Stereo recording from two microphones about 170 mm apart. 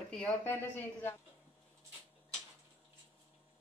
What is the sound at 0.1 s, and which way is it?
Speech, 10° left (ahead or behind).